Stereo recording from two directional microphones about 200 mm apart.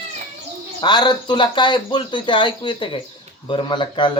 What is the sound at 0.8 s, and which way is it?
Speech, 25° left (ahead or behind).